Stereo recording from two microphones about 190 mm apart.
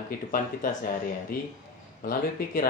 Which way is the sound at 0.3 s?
50° left (ahead or behind).